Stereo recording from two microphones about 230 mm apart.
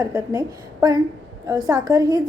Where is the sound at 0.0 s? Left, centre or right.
Centre.